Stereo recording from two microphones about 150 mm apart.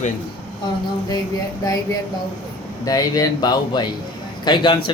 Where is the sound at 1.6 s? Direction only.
25° left (ahead or behind).